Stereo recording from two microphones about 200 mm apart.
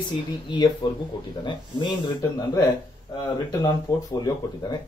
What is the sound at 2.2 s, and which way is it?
Speech, 15° left (ahead or behind).